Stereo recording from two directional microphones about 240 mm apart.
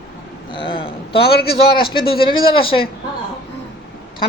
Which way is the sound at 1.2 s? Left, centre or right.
Left.